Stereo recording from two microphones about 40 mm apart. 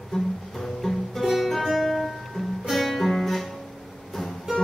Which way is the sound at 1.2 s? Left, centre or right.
Centre.